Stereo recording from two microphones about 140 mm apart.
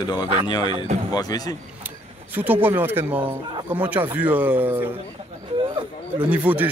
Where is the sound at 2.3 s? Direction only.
15° right (ahead or behind).